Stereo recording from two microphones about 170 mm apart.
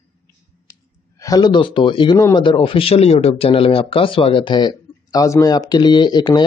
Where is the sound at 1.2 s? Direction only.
20° left (ahead or behind).